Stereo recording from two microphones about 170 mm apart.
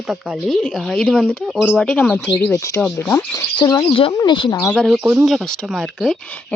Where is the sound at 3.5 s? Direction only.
25° left (ahead or behind).